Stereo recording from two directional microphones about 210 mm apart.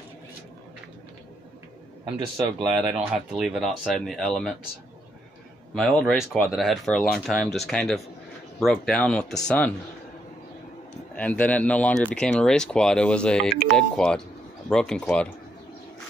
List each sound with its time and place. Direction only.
2.1 s speech: 20° right (ahead or behind)
2.7 s speech: 5° right (ahead or behind)
5.8 s speech: 5° left (ahead or behind)
11.1 s speech: 5° left (ahead or behind)